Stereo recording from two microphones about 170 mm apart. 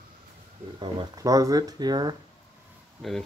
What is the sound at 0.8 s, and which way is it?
Speech, 25° right (ahead or behind).